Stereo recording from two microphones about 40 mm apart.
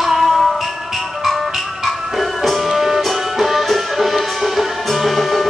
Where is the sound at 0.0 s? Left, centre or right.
Centre.